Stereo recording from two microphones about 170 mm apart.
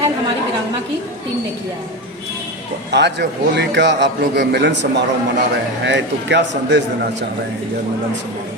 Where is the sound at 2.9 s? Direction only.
90° right.